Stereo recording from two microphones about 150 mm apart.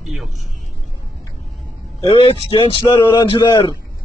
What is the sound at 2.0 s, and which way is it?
A man's voice, 35° left (ahead or behind).